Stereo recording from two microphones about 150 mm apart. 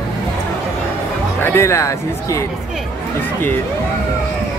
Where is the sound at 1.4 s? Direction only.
15° left (ahead or behind).